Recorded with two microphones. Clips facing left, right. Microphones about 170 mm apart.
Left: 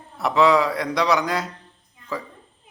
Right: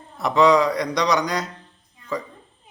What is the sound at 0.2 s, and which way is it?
A man's voice, 5° left (ahead or behind).